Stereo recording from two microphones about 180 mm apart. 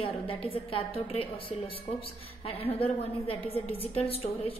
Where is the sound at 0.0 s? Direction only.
30° left (ahead or behind).